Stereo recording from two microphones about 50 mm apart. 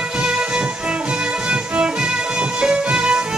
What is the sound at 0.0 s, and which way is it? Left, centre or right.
Music, centre.